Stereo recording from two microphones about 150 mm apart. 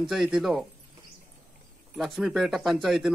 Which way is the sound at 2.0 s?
Centre (ahead or behind).